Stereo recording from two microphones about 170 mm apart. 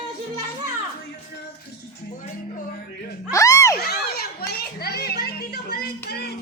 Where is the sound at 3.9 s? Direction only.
65° left (ahead or behind).